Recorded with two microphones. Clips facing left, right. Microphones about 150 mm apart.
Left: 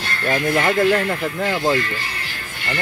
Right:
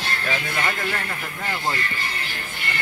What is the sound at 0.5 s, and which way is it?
Speech, 85° left.